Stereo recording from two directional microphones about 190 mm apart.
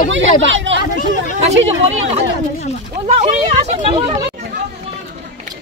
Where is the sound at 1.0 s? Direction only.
45° left (ahead or behind).